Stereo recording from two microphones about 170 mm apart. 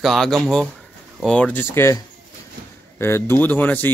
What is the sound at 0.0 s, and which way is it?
Speech, centre (ahead or behind).